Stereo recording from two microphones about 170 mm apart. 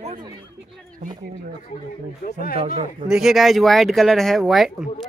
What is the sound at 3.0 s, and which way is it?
Speech, 5° right (ahead or behind).